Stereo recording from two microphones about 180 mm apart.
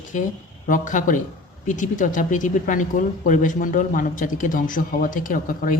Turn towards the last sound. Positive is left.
turn(degrees=50)  # may be behind; listen again after turning